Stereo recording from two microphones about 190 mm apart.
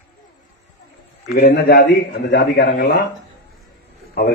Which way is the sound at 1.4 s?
55° left (ahead or behind).